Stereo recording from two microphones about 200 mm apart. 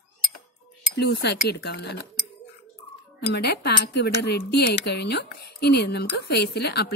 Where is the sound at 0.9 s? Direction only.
55° left (ahead or behind).